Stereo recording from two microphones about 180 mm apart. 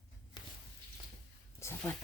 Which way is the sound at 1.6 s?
10° left (ahead or behind).